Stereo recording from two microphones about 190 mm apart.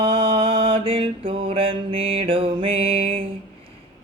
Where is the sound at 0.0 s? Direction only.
30° right (ahead or behind).